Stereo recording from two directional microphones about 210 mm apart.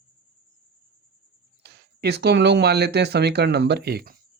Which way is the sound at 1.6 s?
55° right (ahead or behind).